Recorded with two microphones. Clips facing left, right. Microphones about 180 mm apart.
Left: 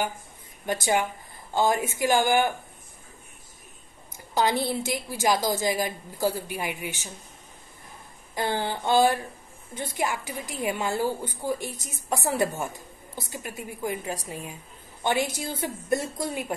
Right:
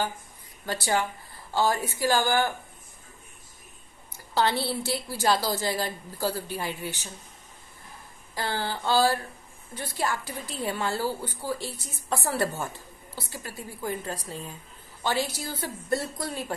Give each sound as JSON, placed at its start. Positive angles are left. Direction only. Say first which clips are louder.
{"t": 0.7, "sound": "a woman's voice", "louder": "left 2 dB", "side_deg": 20}
{"t": 4.3, "sound": "a woman's voice", "louder": "left 1 dB", "side_deg": 15}
{"t": 8.4, "sound": "a woman's voice", "louder": "left 3 dB", "side_deg": 20}